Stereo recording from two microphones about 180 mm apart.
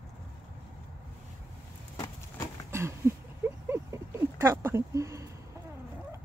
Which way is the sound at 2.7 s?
15° right (ahead or behind).